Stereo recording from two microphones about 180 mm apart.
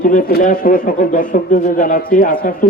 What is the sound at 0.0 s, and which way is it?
Speech, 50° left (ahead or behind).